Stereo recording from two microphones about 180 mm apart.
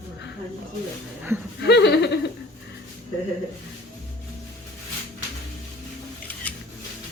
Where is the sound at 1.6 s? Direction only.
70° left (ahead or behind).